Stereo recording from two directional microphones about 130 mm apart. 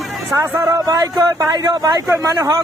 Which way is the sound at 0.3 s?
20° right (ahead or behind).